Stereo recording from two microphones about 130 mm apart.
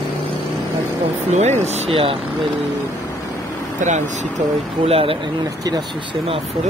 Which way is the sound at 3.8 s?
70° right (ahead or behind).